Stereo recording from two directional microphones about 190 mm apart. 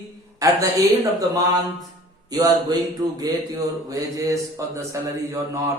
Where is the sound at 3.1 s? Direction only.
20° right (ahead or behind).